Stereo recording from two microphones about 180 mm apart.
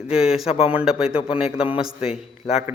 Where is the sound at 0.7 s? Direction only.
5° right (ahead or behind).